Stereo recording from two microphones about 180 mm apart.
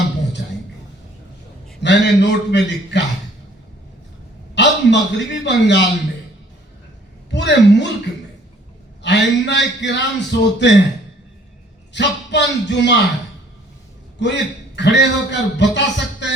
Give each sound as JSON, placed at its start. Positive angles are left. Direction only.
{"t": 0.4, "sound": "music", "side_deg": 70}
{"t": 1.8, "sound": "a man's voice", "side_deg": 75}
{"t": 4.5, "sound": "a man's voice", "side_deg": 75}
{"t": 7.3, "sound": "a woman's voice", "side_deg": 75}
{"t": 9.0, "sound": "a man's voice", "side_deg": 75}
{"t": 11.9, "sound": "a man's voice", "side_deg": 75}
{"t": 14.2, "sound": "a man's voice", "side_deg": 75}